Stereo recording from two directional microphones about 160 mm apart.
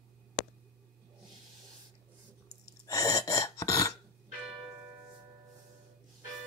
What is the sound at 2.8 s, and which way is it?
Gasp, 20° left (ahead or behind).